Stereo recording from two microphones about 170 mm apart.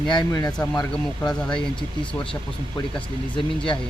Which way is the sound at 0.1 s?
25° left (ahead or behind).